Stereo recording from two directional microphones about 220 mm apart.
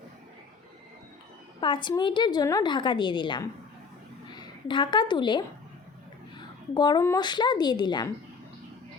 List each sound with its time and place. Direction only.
1.6 s a woman's voice: 20° left (ahead or behind)
6.7 s a woman's voice: 20° left (ahead or behind)